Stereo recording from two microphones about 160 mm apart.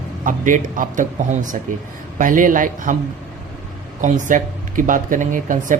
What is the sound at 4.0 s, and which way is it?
Speech, 50° right (ahead or behind).